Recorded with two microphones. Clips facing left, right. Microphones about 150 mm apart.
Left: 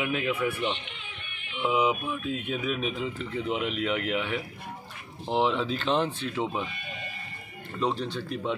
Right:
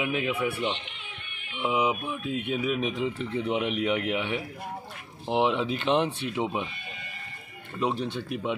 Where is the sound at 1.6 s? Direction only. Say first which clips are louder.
Left 1 dB; 15° right (ahead or behind).